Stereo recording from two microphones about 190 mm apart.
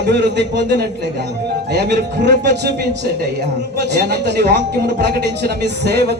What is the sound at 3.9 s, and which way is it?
Speech, 60° right (ahead or behind).